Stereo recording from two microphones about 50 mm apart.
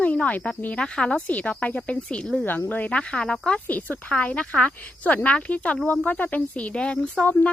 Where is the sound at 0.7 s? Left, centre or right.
Centre.